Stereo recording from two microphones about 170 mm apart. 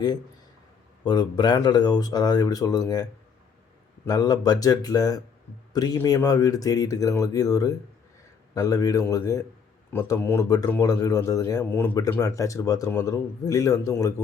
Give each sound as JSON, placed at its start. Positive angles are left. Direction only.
{"t": 1.0, "sound": "speech", "side_deg": 25}